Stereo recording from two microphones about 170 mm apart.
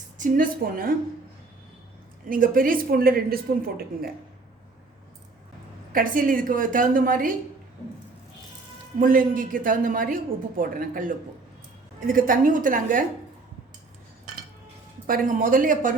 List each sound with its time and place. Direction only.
0.2 s speech: 50° right (ahead or behind)
2.3 s speech: 55° right (ahead or behind)
5.9 s a woman's voice: 55° right (ahead or behind)
9.0 s a woman's voice: 55° right (ahead or behind)
15.0 s a woman's voice: 55° right (ahead or behind)